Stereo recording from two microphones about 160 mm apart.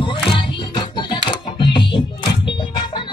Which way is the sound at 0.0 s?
30° left (ahead or behind).